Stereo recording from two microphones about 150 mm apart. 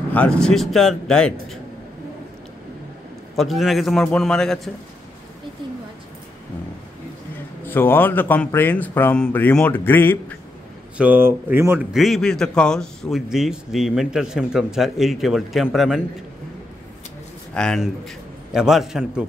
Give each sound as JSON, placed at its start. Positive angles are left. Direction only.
{"t": 0.1, "sound": "speech", "side_deg": 10}
{"t": 3.3, "sound": "speech", "side_deg": 0}
{"t": 7.6, "sound": "speech", "side_deg": 15}
{"t": 11.0, "sound": "speech", "side_deg": -10}
{"t": 11.9, "sound": "speech", "side_deg": 0}
{"t": 17.6, "sound": "speech", "side_deg": 0}